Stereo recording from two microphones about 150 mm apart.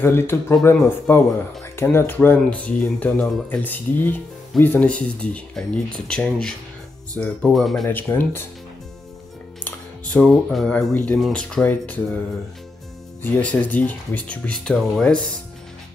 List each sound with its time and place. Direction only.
0.0 s speech: 15° left (ahead or behind)
7.9 s speech: 15° left (ahead or behind)
9.7 s speech: 5° left (ahead or behind)
13.2 s speech: 10° left (ahead or behind)